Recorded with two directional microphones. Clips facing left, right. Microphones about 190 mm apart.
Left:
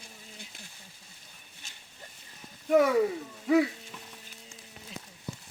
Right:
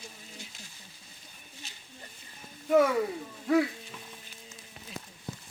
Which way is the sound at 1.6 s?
45° left (ahead or behind).